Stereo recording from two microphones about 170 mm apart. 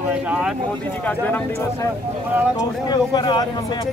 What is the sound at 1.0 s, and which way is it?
Speech, 10° left (ahead or behind).